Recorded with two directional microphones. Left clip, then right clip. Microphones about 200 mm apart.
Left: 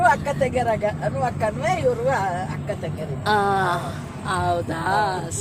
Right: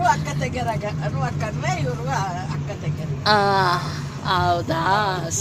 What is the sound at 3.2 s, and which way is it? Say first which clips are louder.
A woman's voice: right 2 dB; 10° right (ahead or behind).